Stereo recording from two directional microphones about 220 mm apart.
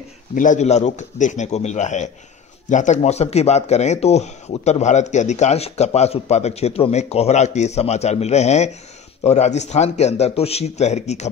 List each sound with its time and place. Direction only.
0.3 s speech: 35° left (ahead or behind)